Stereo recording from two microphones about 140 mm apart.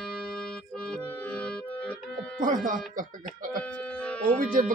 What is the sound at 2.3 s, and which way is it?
Speech, 75° right (ahead or behind).